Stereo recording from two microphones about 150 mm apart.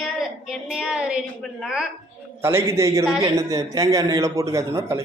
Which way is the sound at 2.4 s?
15° right (ahead or behind).